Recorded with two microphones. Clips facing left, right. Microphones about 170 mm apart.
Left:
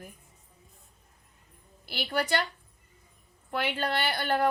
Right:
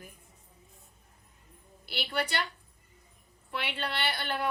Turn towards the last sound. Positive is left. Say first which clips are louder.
# left 6 dB
turn(degrees=50)  # may be behind; listen again after turning